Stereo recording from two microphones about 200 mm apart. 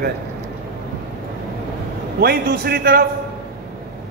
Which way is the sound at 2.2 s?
50° right (ahead or behind).